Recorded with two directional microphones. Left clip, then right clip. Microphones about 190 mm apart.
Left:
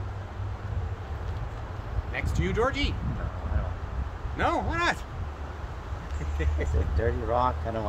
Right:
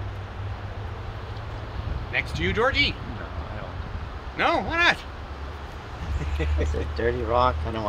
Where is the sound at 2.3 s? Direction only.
70° left (ahead or behind).